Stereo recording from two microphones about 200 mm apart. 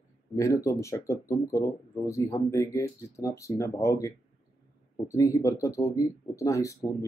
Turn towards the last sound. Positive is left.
turn(degrees=15)  # may be behind; listen again after turning